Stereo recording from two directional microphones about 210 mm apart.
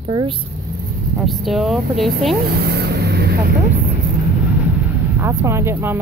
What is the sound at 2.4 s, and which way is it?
Vehicle, 50° right (ahead or behind).